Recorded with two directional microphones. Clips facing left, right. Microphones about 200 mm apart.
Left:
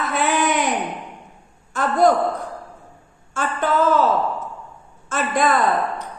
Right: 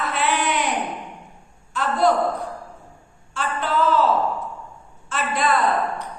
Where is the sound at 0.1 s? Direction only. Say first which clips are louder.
Left 4 dB; 45° left (ahead or behind).